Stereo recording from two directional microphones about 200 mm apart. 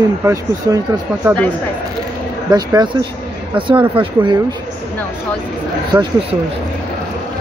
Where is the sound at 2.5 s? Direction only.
20° right (ahead or behind).